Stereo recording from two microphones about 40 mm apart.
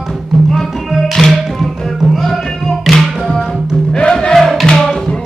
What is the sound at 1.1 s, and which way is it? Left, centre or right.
Music, centre.